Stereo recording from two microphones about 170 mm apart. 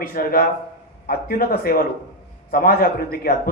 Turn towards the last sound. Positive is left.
turn(degrees=55)  # may be behind; listen again after turning